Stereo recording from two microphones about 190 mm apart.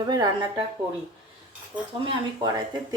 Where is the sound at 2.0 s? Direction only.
20° right (ahead or behind).